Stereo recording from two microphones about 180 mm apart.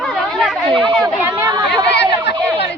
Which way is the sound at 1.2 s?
20° right (ahead or behind).